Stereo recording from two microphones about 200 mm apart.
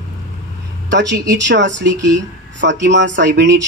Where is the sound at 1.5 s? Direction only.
65° right (ahead or behind).